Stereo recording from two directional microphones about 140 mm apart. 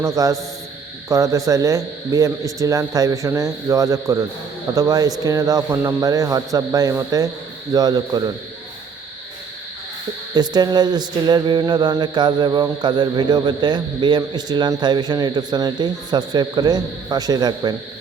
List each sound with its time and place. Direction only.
0.0 s a man's voice: 25° right (ahead or behind)
10.3 s a man's voice: 30° right (ahead or behind)